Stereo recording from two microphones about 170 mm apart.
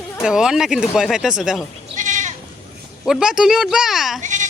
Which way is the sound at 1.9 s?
50° right (ahead or behind).